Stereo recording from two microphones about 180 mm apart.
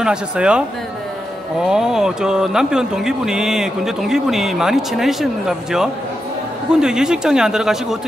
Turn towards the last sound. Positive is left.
turn(degrees=0)  # may be behind; listen again after turning